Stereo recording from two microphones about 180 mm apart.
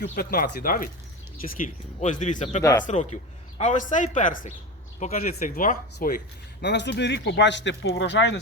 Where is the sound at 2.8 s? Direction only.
40° left (ahead or behind).